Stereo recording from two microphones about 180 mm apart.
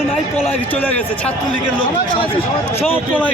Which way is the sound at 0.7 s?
10° left (ahead or behind).